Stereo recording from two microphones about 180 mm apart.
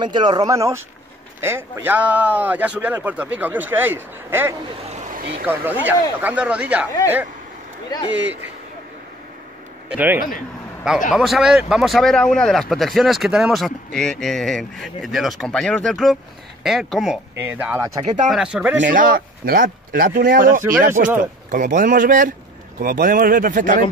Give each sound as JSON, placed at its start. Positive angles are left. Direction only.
{"t": 0.0, "sound": "speech", "side_deg": -25}
{"t": 7.9, "sound": "speech", "side_deg": 25}
{"t": 9.8, "sound": "a man's voice", "side_deg": -10}
{"t": 18.9, "sound": "speech", "side_deg": -50}